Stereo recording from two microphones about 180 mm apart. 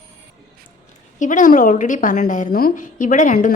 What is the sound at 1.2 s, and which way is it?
A woman's voice, 45° left (ahead or behind).